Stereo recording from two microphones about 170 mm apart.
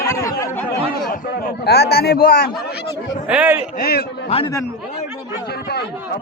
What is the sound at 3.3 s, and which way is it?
Speech, 10° right (ahead or behind).